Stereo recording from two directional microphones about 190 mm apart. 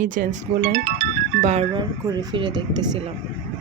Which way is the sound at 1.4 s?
35° right (ahead or behind).